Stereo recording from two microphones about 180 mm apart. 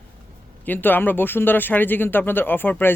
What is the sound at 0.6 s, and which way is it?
Speech, 10° left (ahead or behind).